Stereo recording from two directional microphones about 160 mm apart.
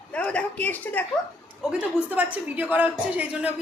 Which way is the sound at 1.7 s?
5° right (ahead or behind).